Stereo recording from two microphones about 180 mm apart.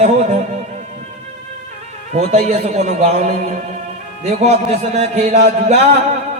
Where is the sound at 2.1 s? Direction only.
35° right (ahead or behind).